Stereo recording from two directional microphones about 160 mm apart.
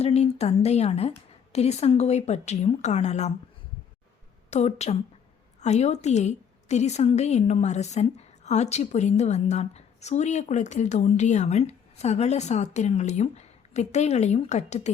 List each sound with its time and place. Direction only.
0.0 s a woman's voice: 40° left (ahead or behind)
4.5 s a woman's voice: 45° left (ahead or behind)